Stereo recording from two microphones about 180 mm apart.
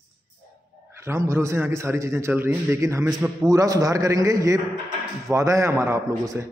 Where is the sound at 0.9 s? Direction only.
15° right (ahead or behind).